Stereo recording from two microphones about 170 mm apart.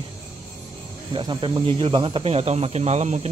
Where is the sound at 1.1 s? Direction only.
30° right (ahead or behind).